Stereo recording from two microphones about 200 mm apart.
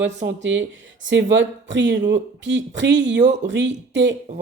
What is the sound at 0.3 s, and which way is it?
Speech, 65° right (ahead or behind).